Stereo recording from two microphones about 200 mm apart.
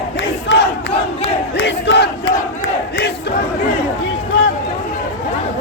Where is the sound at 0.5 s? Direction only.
65° left (ahead or behind).